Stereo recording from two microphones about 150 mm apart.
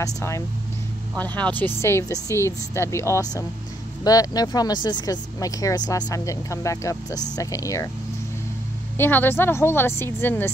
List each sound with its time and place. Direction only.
0.0 s a woman's voice: 20° left (ahead or behind)
8.9 s a woman's voice: 15° left (ahead or behind)